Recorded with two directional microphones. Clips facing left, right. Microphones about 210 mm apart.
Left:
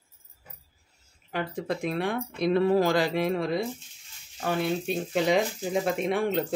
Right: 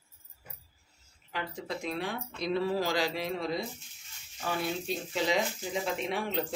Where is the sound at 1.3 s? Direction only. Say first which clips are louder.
Left 7 dB; 55° left (ahead or behind).